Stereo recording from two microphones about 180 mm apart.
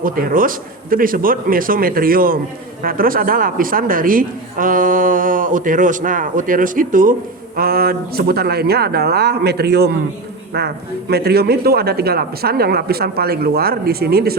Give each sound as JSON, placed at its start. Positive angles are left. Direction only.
{"t": 0.0, "sound": "a woman's voice", "side_deg": -50}
{"t": 11.1, "sound": "speech", "side_deg": -60}